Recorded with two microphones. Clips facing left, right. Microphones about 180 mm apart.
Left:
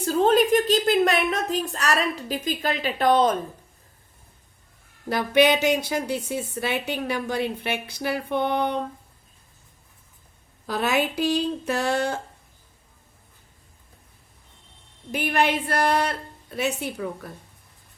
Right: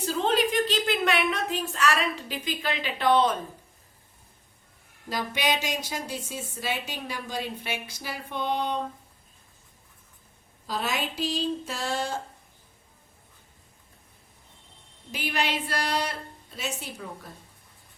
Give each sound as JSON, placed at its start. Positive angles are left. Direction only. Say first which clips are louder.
{"t": 0.0, "sound": "a woman's voice", "louder": "left 6 dB", "side_deg": 50}
{"t": 5.0, "sound": "a woman's voice", "louder": "left 9 dB", "side_deg": 60}
{"t": 10.7, "sound": "a woman's voice", "louder": "left 7 dB", "side_deg": 65}
{"t": 15.1, "sound": "a woman's voice", "louder": "left 6 dB", "side_deg": 55}